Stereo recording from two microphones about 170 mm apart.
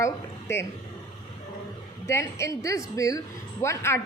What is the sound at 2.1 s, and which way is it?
A woman's voice, 15° left (ahead or behind).